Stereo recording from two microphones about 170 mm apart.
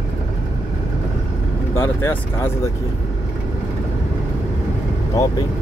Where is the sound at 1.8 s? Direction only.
15° left (ahead or behind).